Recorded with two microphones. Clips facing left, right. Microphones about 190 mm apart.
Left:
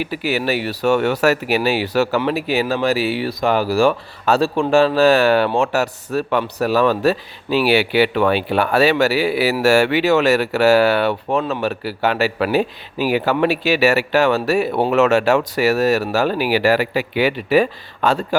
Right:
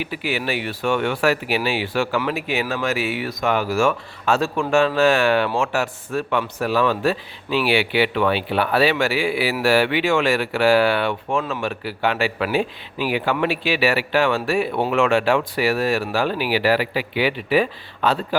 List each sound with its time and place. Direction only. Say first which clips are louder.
0.0 s speech: left 4 dB; 40° left (ahead or behind)